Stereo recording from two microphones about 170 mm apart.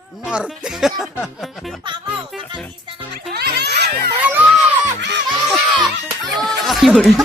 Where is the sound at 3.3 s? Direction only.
70° right (ahead or behind).